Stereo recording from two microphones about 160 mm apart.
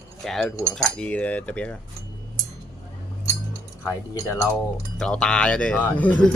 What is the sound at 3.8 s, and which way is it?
Cutlery, 15° left (ahead or behind).